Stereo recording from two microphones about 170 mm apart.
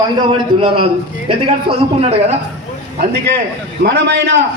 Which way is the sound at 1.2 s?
35° right (ahead or behind).